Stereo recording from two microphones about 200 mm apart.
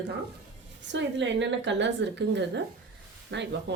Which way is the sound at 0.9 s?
65° right (ahead or behind).